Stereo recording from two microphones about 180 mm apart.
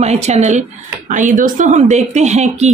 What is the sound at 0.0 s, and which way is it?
A woman's voice, 40° right (ahead or behind).